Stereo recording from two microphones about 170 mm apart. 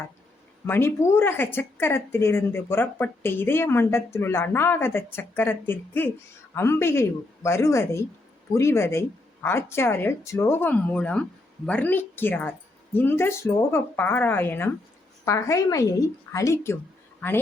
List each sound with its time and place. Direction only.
0.7 s a woman's voice: 15° left (ahead or behind)